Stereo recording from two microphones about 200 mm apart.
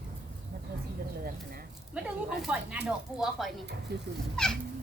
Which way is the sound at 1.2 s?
50° right (ahead or behind).